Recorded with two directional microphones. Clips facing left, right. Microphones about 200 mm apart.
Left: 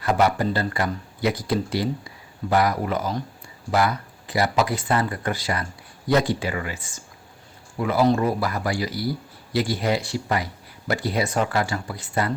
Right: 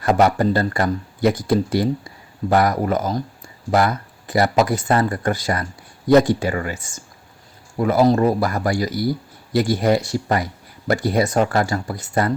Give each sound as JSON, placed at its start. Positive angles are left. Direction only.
{"t": 0.0, "sound": "speech", "side_deg": -45}